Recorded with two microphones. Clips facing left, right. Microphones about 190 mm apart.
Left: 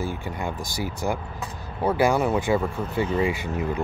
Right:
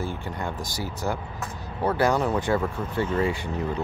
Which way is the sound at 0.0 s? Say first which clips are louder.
Left 2 dB; 10° left (ahead or behind).